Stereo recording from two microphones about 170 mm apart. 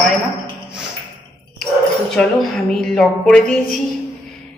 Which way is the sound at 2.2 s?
5° left (ahead or behind).